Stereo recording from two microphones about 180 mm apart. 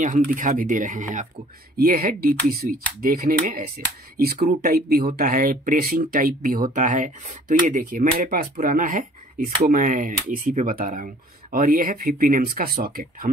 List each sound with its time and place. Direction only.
0.3 s speech: 45° right (ahead or behind)